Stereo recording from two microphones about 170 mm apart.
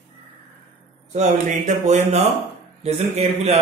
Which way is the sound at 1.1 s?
45° right (ahead or behind).